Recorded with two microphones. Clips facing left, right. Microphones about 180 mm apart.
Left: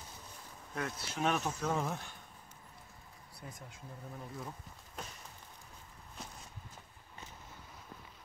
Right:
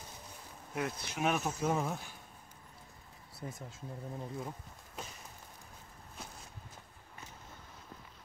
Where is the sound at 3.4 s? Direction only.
35° right (ahead or behind).